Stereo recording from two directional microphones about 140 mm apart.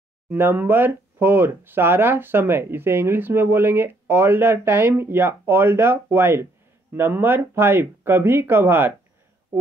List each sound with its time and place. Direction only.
0.3 s speech: 15° right (ahead or behind)